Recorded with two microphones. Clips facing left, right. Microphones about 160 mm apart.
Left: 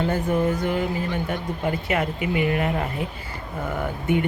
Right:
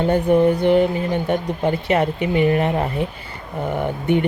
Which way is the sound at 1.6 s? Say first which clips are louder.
Right 5 dB; 35° right (ahead or behind).